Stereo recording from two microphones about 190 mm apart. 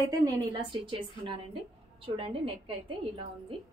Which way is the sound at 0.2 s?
20° right (ahead or behind).